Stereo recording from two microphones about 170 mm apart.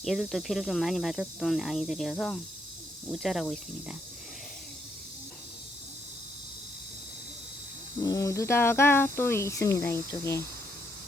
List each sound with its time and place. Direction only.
0.0 s speech: centre (ahead or behind)
8.0 s speech: 20° left (ahead or behind)